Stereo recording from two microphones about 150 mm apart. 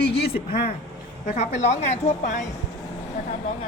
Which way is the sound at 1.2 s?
50° left (ahead or behind).